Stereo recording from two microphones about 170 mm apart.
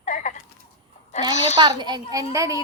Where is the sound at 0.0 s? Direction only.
50° left (ahead or behind).